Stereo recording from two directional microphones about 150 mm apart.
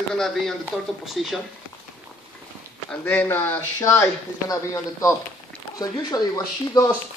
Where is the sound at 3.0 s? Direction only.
10° left (ahead or behind).